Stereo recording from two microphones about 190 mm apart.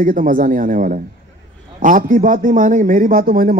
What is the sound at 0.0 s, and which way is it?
A man's voice, 45° right (ahead or behind).